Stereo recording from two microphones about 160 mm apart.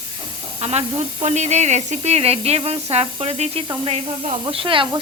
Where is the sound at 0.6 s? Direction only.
45° right (ahead or behind).